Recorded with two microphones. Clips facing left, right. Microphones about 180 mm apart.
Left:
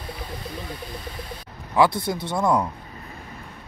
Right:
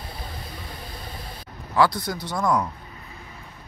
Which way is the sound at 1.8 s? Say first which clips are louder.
Left 2 dB; 25° left (ahead or behind).